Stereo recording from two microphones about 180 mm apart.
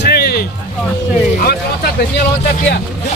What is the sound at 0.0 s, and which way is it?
Vehicle, 60° left (ahead or behind).